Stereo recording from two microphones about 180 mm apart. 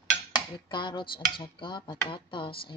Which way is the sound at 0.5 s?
25° left (ahead or behind).